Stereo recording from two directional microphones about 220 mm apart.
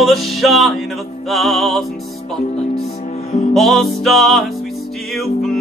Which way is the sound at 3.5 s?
Centre (ahead or behind).